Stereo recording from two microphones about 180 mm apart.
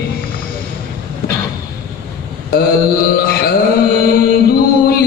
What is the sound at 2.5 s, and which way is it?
Mantra, 55° left (ahead or behind).